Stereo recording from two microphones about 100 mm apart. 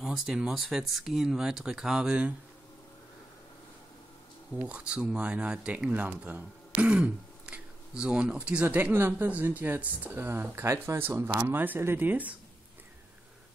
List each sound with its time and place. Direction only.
0.0 s speech: 5° right (ahead or behind)
4.6 s speech: 15° right (ahead or behind)